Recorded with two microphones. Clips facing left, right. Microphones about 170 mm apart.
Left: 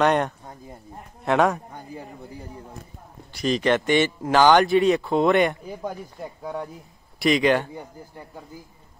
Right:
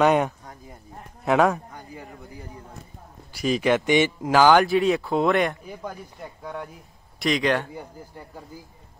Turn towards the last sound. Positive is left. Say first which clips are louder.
# left 3 dB
turn(degrees=0)  # may be behind; listen again after turning